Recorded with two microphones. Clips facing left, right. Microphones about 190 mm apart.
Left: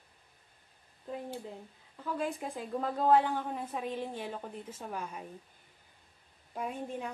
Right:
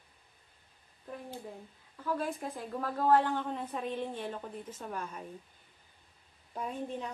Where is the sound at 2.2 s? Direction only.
15° left (ahead or behind).